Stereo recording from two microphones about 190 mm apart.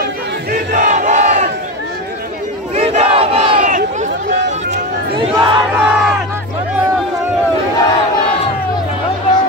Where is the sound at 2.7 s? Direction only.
35° right (ahead or behind).